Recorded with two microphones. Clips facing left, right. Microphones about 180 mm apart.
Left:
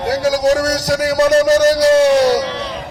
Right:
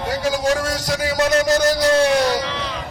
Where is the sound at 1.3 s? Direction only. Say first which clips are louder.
Left 5 dB; 35° left (ahead or behind).